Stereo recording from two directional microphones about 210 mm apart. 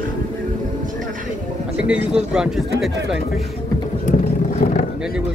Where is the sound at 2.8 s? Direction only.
Centre (ahead or behind).